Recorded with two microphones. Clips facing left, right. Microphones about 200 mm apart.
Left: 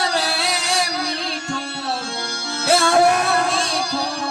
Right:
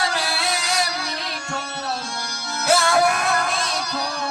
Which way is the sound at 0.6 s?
30° left (ahead or behind).